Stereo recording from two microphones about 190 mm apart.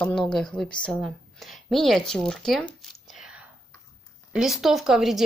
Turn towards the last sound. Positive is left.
turn(degrees=0)  # may be behind; listen again after turning